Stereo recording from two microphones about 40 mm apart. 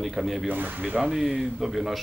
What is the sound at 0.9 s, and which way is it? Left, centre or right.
A man's voice, centre.